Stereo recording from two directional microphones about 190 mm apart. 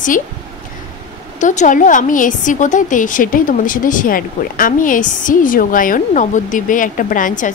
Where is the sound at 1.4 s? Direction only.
40° left (ahead or behind).